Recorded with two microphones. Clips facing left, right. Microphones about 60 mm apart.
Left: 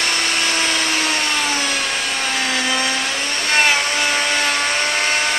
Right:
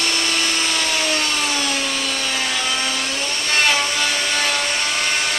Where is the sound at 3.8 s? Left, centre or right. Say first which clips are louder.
Left 3 dB; left.